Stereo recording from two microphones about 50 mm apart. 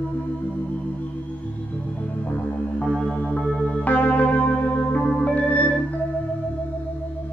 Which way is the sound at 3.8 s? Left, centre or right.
Left.